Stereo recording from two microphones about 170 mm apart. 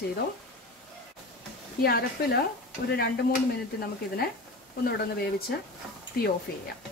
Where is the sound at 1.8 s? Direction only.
65° left (ahead or behind).